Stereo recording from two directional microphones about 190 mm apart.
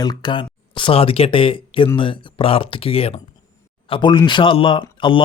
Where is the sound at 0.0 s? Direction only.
20° left (ahead or behind).